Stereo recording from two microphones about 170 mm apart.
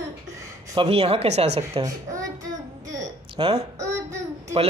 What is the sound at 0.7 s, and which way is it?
Speech, 30° right (ahead or behind).